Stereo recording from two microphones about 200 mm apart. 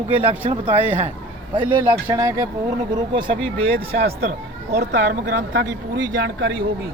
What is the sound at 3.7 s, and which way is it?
Speech, 50° right (ahead or behind).